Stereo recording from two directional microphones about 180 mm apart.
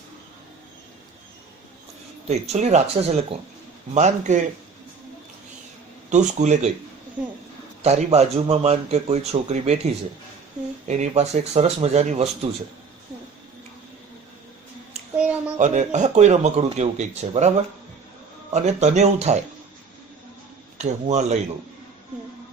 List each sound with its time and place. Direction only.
2.2 s speech: 35° right (ahead or behind)
6.1 s speech: 40° right (ahead or behind)
7.8 s speech: 40° right (ahead or behind)
10.8 s speech: 40° right (ahead or behind)
15.5 s speech: 40° right (ahead or behind)
18.5 s speech: 40° right (ahead or behind)
20.7 s speech: 40° right (ahead or behind)